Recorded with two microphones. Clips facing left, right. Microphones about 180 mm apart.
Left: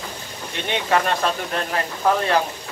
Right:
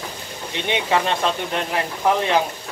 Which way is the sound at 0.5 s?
15° right (ahead or behind).